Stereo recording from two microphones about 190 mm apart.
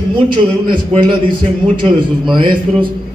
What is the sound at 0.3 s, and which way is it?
A man's voice, 25° right (ahead or behind).